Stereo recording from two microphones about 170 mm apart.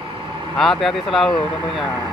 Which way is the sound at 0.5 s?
5° left (ahead or behind).